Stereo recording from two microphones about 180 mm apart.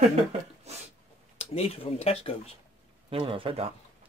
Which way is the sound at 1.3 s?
35° left (ahead or behind).